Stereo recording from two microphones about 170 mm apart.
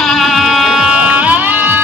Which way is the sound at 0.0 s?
Centre (ahead or behind).